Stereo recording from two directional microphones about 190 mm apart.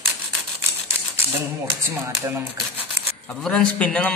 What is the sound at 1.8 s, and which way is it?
Speech, 15° right (ahead or behind).